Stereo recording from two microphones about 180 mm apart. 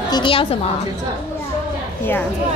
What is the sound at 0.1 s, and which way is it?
Speech, 30° left (ahead or behind).